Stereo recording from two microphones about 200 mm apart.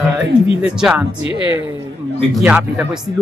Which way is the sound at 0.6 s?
5° right (ahead or behind).